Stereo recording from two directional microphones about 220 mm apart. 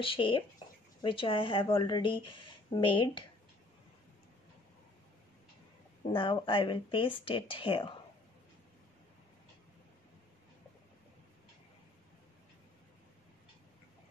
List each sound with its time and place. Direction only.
0.0 s speech: 25° left (ahead or behind)
6.1 s speech: 20° left (ahead or behind)